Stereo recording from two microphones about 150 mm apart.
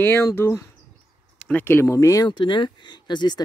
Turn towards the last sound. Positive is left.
turn(degrees=30)  # may be behind; listen again after turning